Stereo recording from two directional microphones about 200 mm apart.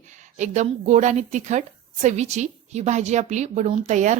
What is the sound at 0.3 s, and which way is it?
A woman's voice, 35° right (ahead or behind).